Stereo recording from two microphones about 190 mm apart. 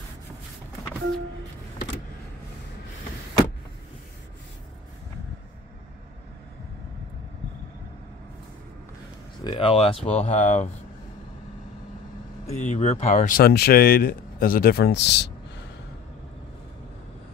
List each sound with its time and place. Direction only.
9.4 s speech: 25° left (ahead or behind)
12.4 s speech: 35° left (ahead or behind)
13.4 s a man's voice: 55° left (ahead or behind)